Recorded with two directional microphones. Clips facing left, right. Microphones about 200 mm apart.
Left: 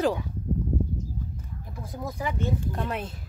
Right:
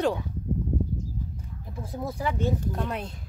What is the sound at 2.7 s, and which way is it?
Speech, centre (ahead or behind).